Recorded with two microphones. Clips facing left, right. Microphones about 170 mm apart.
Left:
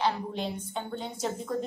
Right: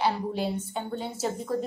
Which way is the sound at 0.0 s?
10° right (ahead or behind).